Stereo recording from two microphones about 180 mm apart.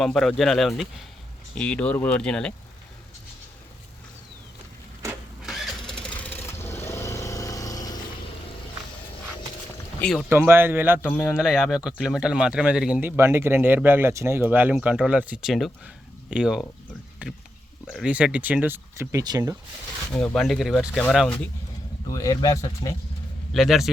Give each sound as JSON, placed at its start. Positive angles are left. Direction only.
{"t": 0.0, "sound": "speech", "side_deg": 0}
{"t": 5.4, "sound": "vehicle", "side_deg": 0}
{"t": 10.0, "sound": "speech", "side_deg": 0}
{"t": 10.2, "sound": "speech", "side_deg": -15}
{"t": 11.1, "sound": "speech", "side_deg": 5}
{"t": 11.3, "sound": "speech", "side_deg": -5}
{"t": 20.1, "sound": "speech", "side_deg": 5}
{"t": 22.1, "sound": "speech", "side_deg": 20}
{"t": 23.6, "sound": "speech", "side_deg": 0}